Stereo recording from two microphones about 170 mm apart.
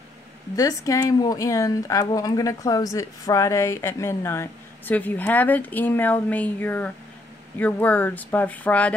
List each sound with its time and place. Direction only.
0.6 s speech: 20° left (ahead or behind)